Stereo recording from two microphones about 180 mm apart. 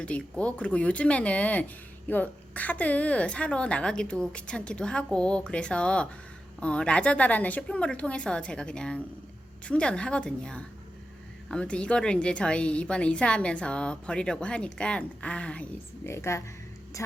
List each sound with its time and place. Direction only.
0.0 s a woman's voice: 5° left (ahead or behind)